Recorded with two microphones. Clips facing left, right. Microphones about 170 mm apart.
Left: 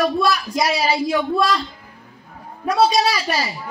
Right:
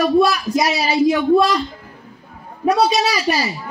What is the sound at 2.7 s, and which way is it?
Speech, 20° right (ahead or behind).